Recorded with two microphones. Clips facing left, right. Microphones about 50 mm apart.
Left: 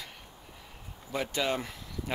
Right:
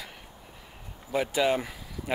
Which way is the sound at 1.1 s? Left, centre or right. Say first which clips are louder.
Right 5 dB; centre.